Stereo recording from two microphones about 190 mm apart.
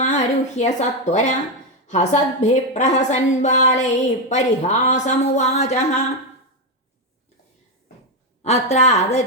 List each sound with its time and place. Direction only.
0.0 s a woman's voice: 40° left (ahead or behind)
8.4 s a woman's voice: 35° left (ahead or behind)